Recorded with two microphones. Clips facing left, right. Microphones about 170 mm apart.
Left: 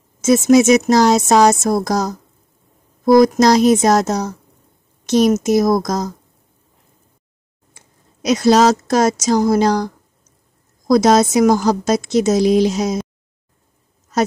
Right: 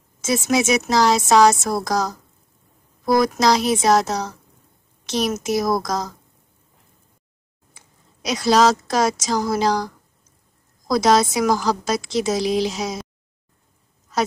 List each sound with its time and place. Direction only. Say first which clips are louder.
0.2 s speech: left 9 dB; 45° left (ahead or behind)
3.1 s speech: left 7 dB; 45° left (ahead or behind)
7.7 s speech: left 2 dB; 45° left (ahead or behind)
11.0 s speech: left 4 dB; 45° left (ahead or behind)